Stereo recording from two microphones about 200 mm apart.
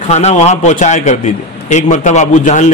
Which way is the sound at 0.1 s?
35° left (ahead or behind).